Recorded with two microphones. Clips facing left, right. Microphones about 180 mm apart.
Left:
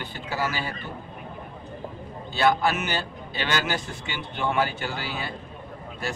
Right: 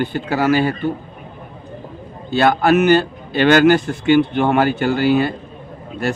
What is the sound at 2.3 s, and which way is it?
A man's voice, 65° right (ahead or behind).